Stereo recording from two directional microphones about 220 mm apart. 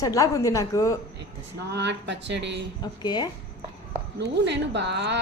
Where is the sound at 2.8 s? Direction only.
20° left (ahead or behind).